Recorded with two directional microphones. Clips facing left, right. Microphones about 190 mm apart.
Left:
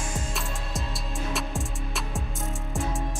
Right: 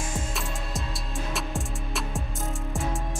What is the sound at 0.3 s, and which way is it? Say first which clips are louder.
Music: even; centre (ahead or behind).